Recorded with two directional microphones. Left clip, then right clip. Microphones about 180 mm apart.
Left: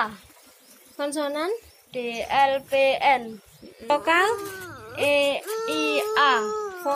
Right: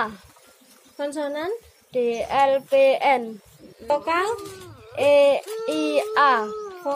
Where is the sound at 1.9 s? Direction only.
40° right (ahead or behind).